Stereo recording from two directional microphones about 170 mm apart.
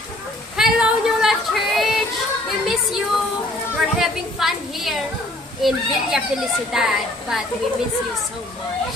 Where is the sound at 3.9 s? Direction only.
Centre (ahead or behind).